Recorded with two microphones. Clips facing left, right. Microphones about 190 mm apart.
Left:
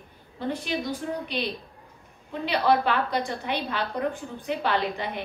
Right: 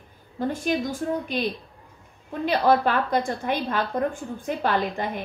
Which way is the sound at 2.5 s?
45° right (ahead or behind).